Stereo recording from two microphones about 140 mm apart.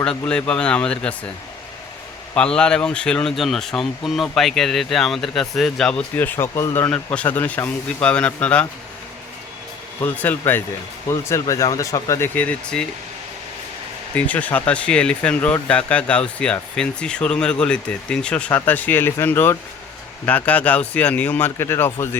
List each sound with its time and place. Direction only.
0.0 s speech: 5° left (ahead or behind)
2.3 s speech: 5° left (ahead or behind)
10.0 s speech: 15° left (ahead or behind)
14.2 s speech: 10° left (ahead or behind)